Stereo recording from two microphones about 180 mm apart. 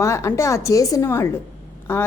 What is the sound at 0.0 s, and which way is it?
A woman's voice, 15° left (ahead or behind).